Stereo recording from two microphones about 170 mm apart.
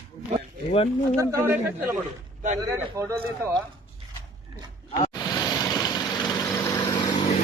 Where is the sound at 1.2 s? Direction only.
15° right (ahead or behind).